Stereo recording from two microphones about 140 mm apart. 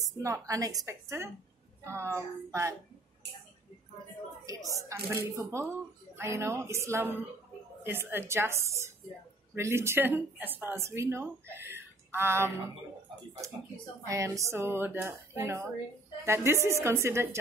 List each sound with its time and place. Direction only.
0.0 s speech: 25° right (ahead or behind)
4.5 s speech: 25° right (ahead or behind)
14.0 s speech: 25° right (ahead or behind)